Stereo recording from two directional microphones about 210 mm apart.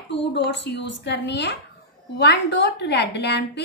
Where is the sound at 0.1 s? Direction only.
55° left (ahead or behind).